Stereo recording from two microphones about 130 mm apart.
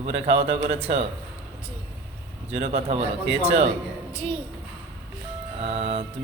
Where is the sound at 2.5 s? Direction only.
50° right (ahead or behind).